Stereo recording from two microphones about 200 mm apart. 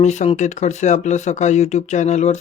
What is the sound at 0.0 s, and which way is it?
Speech, 35° left (ahead or behind).